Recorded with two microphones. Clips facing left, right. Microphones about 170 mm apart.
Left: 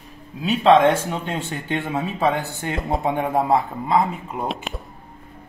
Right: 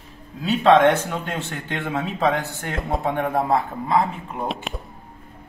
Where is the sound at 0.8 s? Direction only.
15° left (ahead or behind).